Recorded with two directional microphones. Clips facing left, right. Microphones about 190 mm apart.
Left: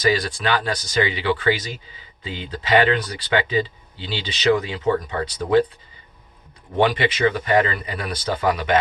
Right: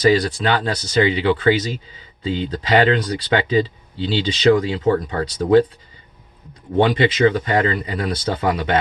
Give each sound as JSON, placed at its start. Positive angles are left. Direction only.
{"t": 0.0, "sound": "speech", "side_deg": -30}
{"t": 6.8, "sound": "speech", "side_deg": -30}